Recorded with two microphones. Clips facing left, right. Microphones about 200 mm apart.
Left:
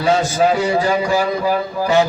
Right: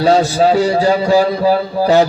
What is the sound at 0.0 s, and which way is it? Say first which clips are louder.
A man's voice: right 4 dB; 35° right (ahead or behind).